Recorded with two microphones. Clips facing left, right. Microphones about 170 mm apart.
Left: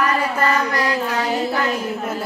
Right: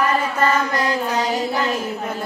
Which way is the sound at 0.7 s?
20° right (ahead or behind).